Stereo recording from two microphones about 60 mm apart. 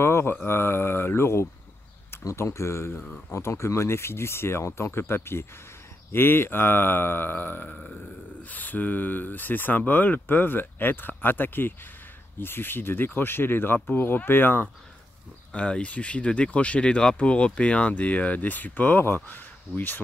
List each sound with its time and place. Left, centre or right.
0.0 s mantra: left
0.5 s speech: left
7.7 s burping: centre
8.5 s speech: left
15.5 s speech: centre; by 20.0 s left